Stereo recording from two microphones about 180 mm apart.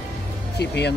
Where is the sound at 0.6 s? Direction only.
70° left (ahead or behind).